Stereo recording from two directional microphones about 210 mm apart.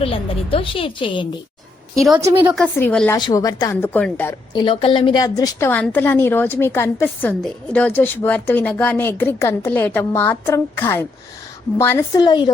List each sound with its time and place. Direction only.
0.0 s a woman's voice: 25° left (ahead or behind)
2.0 s a woman's voice: centre (ahead or behind)
2.6 s a woman's voice: 5° left (ahead or behind)
3.2 s a woman's voice: 20° left (ahead or behind)